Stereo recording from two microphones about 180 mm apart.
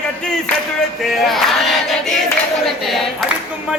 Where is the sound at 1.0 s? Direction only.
Centre (ahead or behind).